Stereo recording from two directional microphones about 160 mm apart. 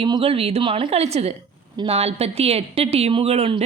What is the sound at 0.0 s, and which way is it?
Speech, 35° right (ahead or behind).